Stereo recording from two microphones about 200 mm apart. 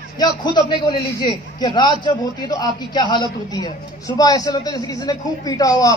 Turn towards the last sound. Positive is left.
turn(degrees=20)  # may be behind; listen again after turning